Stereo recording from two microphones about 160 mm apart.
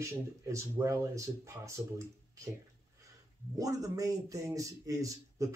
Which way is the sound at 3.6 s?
20° right (ahead or behind).